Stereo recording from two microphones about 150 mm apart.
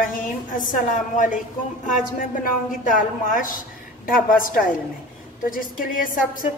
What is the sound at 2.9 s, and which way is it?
A woman's voice, 60° left (ahead or behind).